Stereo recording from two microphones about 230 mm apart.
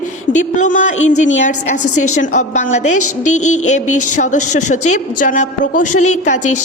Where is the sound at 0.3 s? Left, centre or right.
Left.